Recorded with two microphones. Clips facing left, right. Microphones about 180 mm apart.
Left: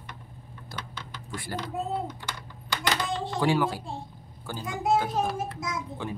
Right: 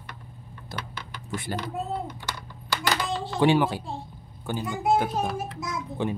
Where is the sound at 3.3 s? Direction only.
20° right (ahead or behind).